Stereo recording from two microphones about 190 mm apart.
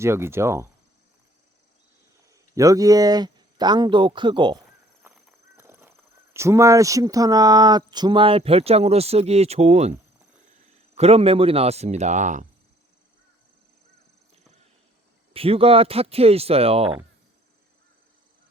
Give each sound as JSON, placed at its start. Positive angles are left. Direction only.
{"t": 0.0, "sound": "cricket", "side_deg": -15}
{"t": 2.6, "sound": "speech", "side_deg": -15}
{"t": 5.1, "sound": "horse", "side_deg": -10}
{"t": 6.3, "sound": "speech", "side_deg": -15}
{"t": 10.9, "sound": "speech", "side_deg": -30}
{"t": 15.3, "sound": "speech", "side_deg": -30}